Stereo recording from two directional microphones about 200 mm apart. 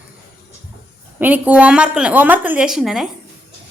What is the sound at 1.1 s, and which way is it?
A woman's voice, 10° right (ahead or behind).